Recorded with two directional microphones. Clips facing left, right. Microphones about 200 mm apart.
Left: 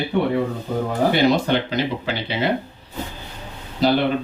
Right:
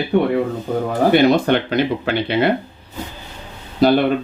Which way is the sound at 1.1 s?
55° right (ahead or behind).